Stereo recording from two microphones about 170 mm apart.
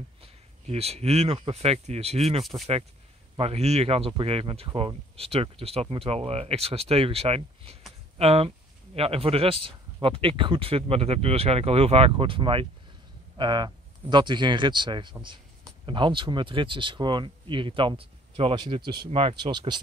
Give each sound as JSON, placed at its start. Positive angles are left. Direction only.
{"t": 0.2, "sound": "speech", "side_deg": -35}